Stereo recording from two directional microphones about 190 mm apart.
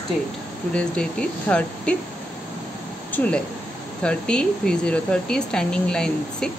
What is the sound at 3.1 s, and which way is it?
Speech, 10° left (ahead or behind).